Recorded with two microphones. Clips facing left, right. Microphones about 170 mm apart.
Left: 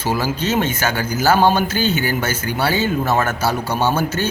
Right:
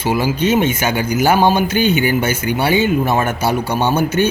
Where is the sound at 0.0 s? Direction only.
10° right (ahead or behind).